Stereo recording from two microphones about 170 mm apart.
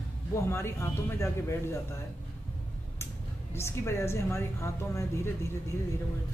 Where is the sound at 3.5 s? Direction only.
15° left (ahead or behind).